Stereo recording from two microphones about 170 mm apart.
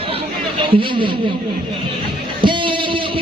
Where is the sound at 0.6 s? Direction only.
30° right (ahead or behind).